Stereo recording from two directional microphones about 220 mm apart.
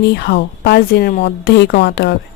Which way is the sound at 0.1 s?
50° left (ahead or behind).